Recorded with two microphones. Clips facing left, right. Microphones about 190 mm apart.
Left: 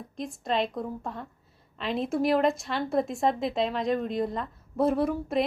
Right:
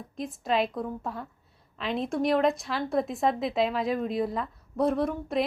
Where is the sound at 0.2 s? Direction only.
Centre (ahead or behind).